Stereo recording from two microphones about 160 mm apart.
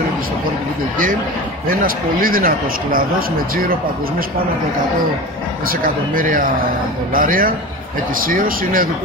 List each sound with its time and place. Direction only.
1.7 s speech: 65° right (ahead or behind)
5.7 s speech: 60° right (ahead or behind)